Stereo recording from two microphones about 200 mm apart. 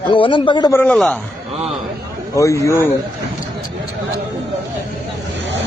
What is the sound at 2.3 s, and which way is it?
Speech, 15° left (ahead or behind).